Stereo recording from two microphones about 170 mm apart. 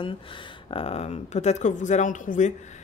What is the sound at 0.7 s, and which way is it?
A woman's voice, 35° left (ahead or behind).